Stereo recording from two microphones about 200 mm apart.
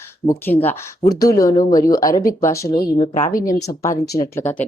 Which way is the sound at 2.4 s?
15° left (ahead or behind).